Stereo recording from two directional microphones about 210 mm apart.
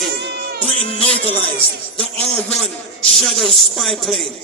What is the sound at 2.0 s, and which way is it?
A man's voice, 5° left (ahead or behind).